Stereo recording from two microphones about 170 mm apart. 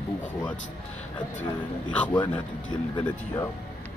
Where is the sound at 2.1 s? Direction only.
25° left (ahead or behind).